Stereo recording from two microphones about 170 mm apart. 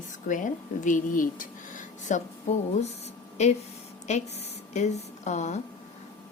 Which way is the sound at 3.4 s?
40° left (ahead or behind).